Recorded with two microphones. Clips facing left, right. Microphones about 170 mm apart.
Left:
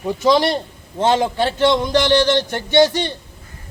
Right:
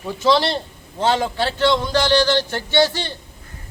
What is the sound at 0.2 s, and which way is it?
A man's voice, 15° left (ahead or behind).